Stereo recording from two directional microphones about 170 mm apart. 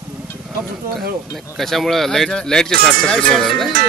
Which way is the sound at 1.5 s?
Centre (ahead or behind).